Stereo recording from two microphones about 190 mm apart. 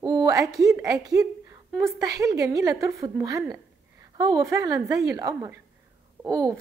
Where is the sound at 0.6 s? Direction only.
15° right (ahead or behind).